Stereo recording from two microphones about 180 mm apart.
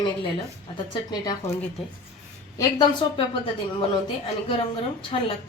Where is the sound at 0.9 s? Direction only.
25° left (ahead or behind).